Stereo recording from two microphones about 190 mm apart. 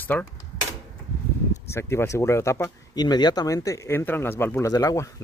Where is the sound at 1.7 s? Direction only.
15° left (ahead or behind).